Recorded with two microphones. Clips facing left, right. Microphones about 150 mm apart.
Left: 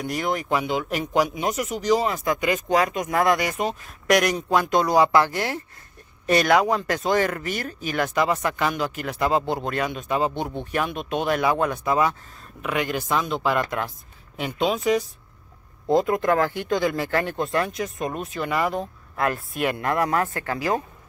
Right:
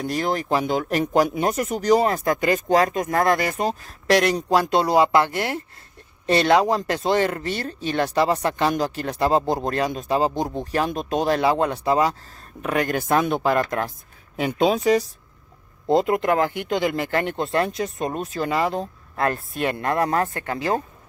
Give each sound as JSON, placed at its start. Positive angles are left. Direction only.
{"t": 0.0, "sound": "speech", "side_deg": -30}
{"t": 12.6, "sound": "speech", "side_deg": -45}
{"t": 15.9, "sound": "speech", "side_deg": -25}